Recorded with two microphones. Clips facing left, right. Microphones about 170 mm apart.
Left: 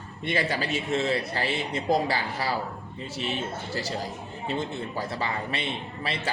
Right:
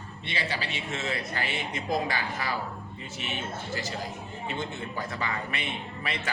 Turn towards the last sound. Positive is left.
turn(degrees=30)  # may be behind; listen again after turning